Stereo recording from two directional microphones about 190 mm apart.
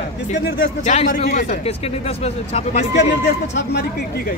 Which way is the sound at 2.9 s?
65° left (ahead or behind).